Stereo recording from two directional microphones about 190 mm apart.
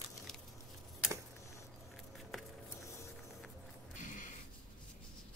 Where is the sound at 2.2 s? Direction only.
Centre (ahead or behind).